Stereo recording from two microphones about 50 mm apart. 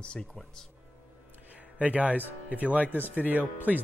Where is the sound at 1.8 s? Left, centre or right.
Right.